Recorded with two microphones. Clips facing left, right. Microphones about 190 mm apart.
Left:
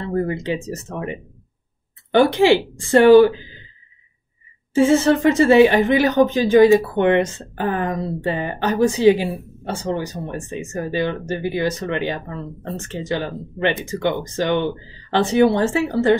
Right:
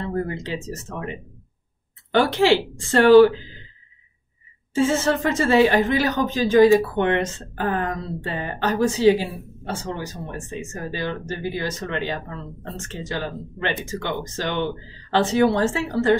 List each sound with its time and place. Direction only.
0.3 s speech: 15° left (ahead or behind)
2.1 s speech: 15° left (ahead or behind)
4.7 s speech: 15° left (ahead or behind)